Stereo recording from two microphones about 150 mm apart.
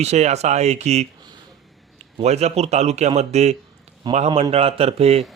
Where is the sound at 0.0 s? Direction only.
50° right (ahead or behind).